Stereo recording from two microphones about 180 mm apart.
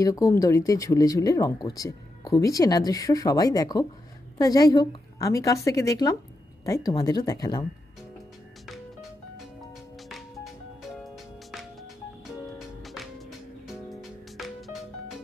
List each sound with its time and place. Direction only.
0.0 s speech: 20° left (ahead or behind)
9.9 s music: centre (ahead or behind)
12.5 s music: centre (ahead or behind)